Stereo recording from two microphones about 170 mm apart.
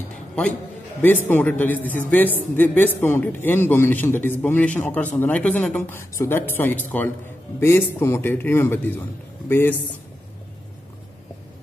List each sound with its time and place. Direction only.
1.0 s a man's voice: 10° left (ahead or behind)